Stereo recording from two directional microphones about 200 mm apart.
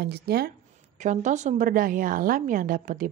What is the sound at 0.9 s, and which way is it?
A woman's voice, 35° right (ahead or behind).